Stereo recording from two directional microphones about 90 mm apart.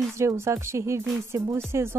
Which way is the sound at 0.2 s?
30° right (ahead or behind).